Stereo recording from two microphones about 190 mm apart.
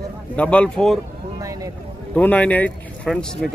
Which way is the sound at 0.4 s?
5° left (ahead or behind).